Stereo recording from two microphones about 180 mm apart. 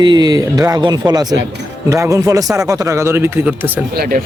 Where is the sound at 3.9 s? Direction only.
60° right (ahead or behind).